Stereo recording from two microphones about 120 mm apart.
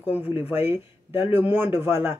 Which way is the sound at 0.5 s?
15° right (ahead or behind).